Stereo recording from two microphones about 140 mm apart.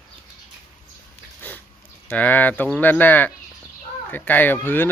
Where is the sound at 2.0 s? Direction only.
10° left (ahead or behind).